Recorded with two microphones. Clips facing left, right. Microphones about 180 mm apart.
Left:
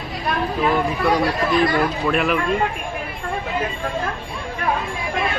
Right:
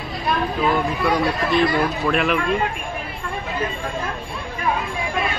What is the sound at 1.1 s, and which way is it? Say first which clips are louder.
Speech: even; centre (ahead or behind).